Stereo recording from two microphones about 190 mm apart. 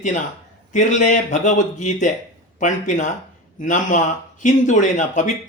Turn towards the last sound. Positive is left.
turn(degrees=40)  # may be behind; listen again after turning